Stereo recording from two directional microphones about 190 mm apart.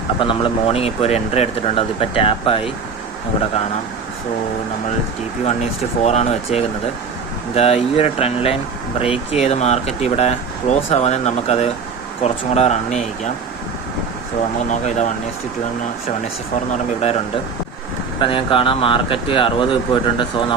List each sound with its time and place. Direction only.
0.2 s speech: 25° left (ahead or behind)
6.0 s speech: 35° left (ahead or behind)
14.7 s speech: 40° left (ahead or behind)
16.7 s speech: 35° left (ahead or behind)
18.2 s speech: 25° left (ahead or behind)